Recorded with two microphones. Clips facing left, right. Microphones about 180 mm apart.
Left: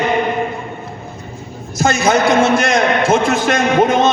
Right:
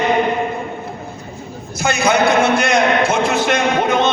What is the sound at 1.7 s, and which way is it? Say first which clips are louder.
A man's voice: left 2 dB; 45° left (ahead or behind).